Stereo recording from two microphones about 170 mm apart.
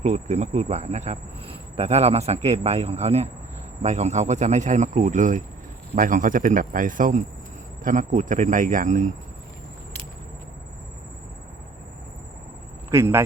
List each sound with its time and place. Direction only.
0.0 s a man's voice: 40° right (ahead or behind)
12.9 s speech: 15° right (ahead or behind)